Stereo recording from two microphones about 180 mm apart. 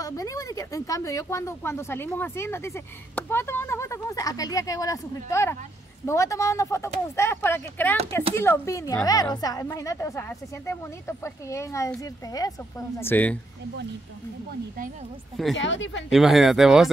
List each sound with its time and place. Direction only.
0.0 s a woman's voice: 20° left (ahead or behind)
15.5 s speech: 90° left
16.1 s speech: centre (ahead or behind)